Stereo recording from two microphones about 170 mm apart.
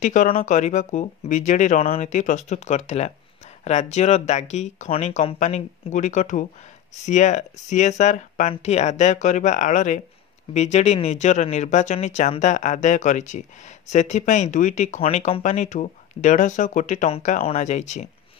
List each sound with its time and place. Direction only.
0.0 s speech: 50° left (ahead or behind)